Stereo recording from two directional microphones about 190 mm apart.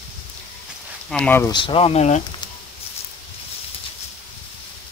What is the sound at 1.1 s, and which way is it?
Speech, 5° left (ahead or behind).